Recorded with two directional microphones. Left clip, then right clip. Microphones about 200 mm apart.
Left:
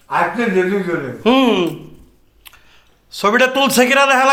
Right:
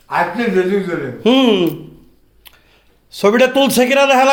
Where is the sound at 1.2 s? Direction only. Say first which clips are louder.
Right 1 dB; 40° right (ahead or behind).